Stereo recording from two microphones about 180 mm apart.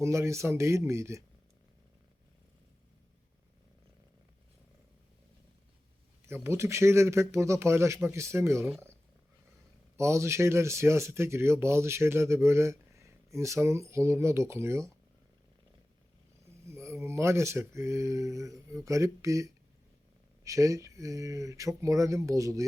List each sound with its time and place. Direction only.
0.0 s speech: 15° right (ahead or behind)
6.2 s speech: 15° right (ahead or behind)
10.0 s speech: 15° right (ahead or behind)
16.7 s speech: 15° right (ahead or behind)